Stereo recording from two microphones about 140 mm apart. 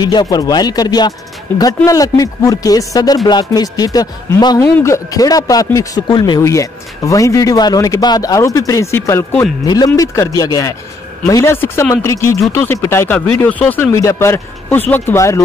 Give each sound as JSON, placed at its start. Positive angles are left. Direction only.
{"t": 0.0, "sound": "speech", "side_deg": 30}